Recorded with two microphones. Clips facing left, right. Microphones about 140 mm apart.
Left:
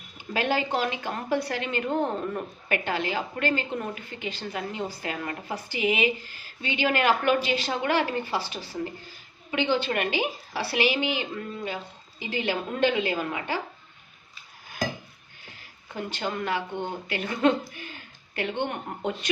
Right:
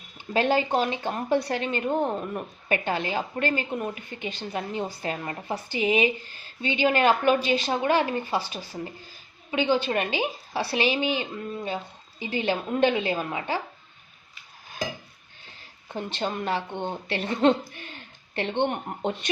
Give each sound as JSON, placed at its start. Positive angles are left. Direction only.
{"t": 0.3, "sound": "a woman's voice", "side_deg": -20}
{"t": 16.0, "sound": "a woman's voice", "side_deg": -25}